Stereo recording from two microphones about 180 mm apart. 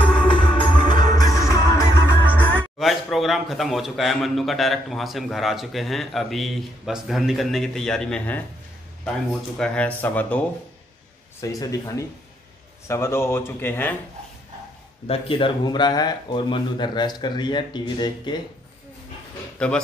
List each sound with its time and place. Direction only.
0.0 s music: 30° left (ahead or behind); by 2.7 s 10° left (ahead or behind)
2.8 s a man's voice: centre (ahead or behind)
9.6 s speech: 10° left (ahead or behind)
11.4 s speech: 20° left (ahead or behind)
15.0 s speech: 30° left (ahead or behind)
19.6 s a man's voice: 5° left (ahead or behind)